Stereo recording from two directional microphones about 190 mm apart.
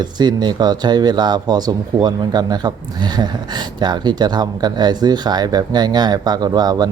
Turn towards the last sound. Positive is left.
turn(degrees=-20)  # may be behind; listen again after turning